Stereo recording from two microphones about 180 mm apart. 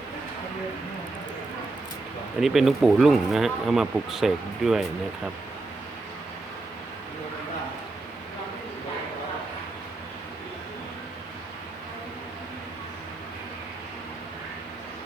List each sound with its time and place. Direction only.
2.4 s speech: centre (ahead or behind)